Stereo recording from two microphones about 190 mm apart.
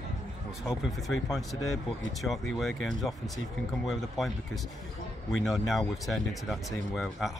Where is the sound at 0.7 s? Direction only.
Centre (ahead or behind).